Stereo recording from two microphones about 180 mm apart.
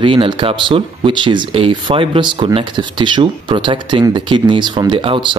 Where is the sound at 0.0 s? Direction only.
30° right (ahead or behind).